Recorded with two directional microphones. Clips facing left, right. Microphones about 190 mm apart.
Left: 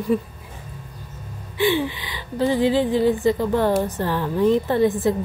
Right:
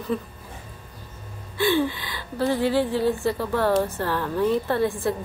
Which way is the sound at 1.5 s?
15° left (ahead or behind).